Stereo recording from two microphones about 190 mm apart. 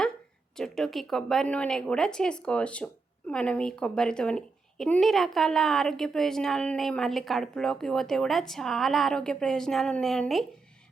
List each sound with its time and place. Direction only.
0.5 s speech: centre (ahead or behind)